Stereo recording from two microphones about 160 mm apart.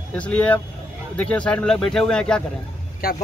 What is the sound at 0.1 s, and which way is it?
Speech, 10° left (ahead or behind).